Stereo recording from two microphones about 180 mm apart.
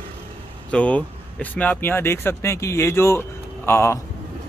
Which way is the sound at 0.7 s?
5° left (ahead or behind).